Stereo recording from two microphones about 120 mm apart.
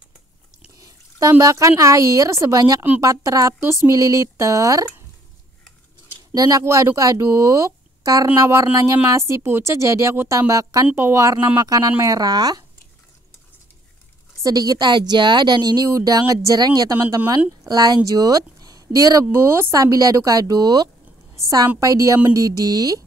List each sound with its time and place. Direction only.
0.7 s drip: 30° right (ahead or behind)
1.4 s speech: 25° right (ahead or behind)
6.3 s a woman's voice: 30° right (ahead or behind)
14.4 s a woman's voice: 30° right (ahead or behind)
19.2 s speech: 20° right (ahead or behind)